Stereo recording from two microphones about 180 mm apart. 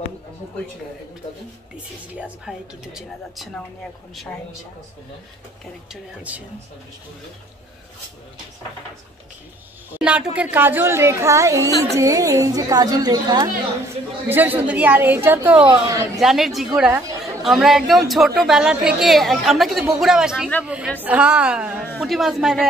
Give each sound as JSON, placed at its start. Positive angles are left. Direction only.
{"t": 2.1, "sound": "a woman's voice", "side_deg": -5}
{"t": 5.9, "sound": "speech", "side_deg": -10}
{"t": 10.0, "sound": "a woman's voice", "side_deg": -5}
{"t": 14.3, "sound": "speech", "side_deg": -10}
{"t": 15.6, "sound": "a woman's voice", "side_deg": -25}
{"t": 16.2, "sound": "a woman's voice", "side_deg": 0}